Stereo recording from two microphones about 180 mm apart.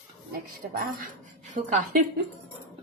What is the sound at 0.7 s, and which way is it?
Speech, 50° right (ahead or behind).